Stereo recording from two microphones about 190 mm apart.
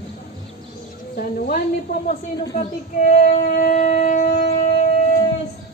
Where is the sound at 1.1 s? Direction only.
50° left (ahead or behind).